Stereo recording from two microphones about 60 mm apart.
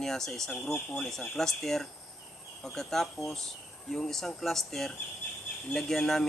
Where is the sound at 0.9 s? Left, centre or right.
Centre.